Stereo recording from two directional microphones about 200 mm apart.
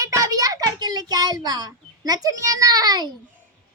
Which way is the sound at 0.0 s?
15° right (ahead or behind).